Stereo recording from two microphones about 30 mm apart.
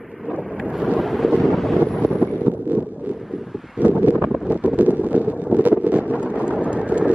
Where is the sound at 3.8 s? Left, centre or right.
Right.